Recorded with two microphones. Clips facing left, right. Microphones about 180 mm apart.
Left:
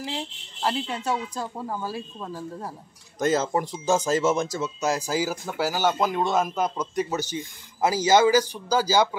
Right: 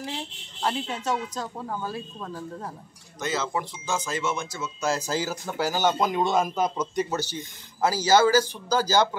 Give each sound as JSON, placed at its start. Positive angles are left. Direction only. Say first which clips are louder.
{"t": 0.0, "sound": "speech", "louder": "left 2 dB", "side_deg": 5}
{"t": 3.2, "sound": "speech", "louder": "left 6 dB", "side_deg": 45}
{"t": 4.8, "sound": "speech", "louder": "left 1 dB", "side_deg": 15}
{"t": 7.2, "sound": "speech", "louder": "left 2 dB", "side_deg": 15}